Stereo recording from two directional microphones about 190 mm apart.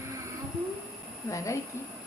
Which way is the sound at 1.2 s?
15° left (ahead or behind).